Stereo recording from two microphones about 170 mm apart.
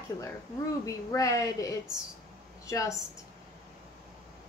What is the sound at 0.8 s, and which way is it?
A woman's voice, 20° left (ahead or behind).